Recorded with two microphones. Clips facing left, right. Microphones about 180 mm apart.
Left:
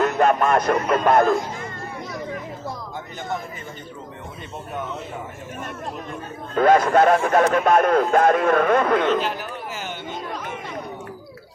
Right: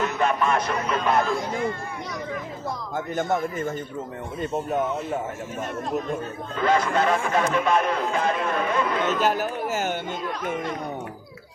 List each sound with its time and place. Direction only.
0.0 s speech: 45° left (ahead or behind)
2.9 s speech: 50° right (ahead or behind)
6.6 s speech: 50° left (ahead or behind)
9.0 s speech: 45° right (ahead or behind)